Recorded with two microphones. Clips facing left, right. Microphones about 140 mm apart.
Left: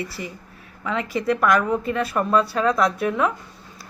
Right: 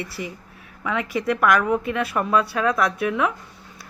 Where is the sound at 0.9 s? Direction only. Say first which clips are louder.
Left 1 dB; 5° right (ahead or behind).